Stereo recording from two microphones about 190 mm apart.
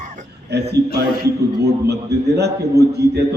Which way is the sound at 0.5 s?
60° right (ahead or behind).